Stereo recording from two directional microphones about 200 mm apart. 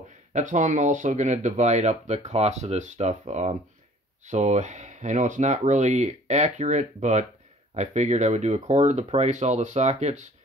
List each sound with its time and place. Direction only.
0.3 s speech: 40° right (ahead or behind)